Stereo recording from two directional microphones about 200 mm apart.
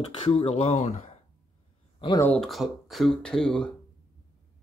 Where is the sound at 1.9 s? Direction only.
20° left (ahead or behind).